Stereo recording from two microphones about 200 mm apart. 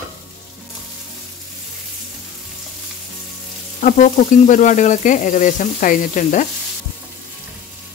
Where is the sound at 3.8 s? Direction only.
40° left (ahead or behind).